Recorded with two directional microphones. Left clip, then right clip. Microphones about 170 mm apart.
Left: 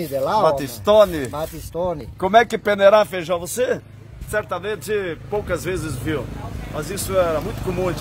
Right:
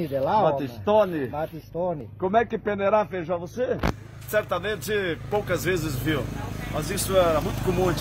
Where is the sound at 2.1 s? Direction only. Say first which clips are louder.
Left 8 dB; 80° left; by 3.8 s 45° left (ahead or behind).